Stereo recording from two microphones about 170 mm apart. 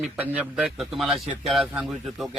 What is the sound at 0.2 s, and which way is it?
A man's voice, 10° right (ahead or behind).